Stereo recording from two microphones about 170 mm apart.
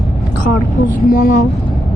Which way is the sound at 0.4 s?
55° left (ahead or behind).